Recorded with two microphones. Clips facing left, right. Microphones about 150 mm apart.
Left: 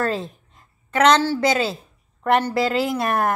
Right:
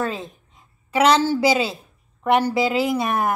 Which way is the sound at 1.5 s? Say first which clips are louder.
Right 1 dB; centre (ahead or behind).